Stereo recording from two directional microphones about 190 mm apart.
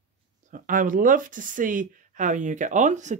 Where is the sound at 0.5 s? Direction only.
45° right (ahead or behind).